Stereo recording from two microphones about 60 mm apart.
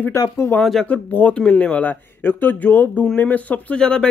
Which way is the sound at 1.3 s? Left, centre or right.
Centre.